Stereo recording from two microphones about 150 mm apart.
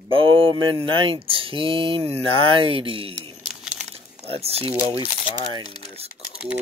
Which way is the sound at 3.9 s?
40° right (ahead or behind).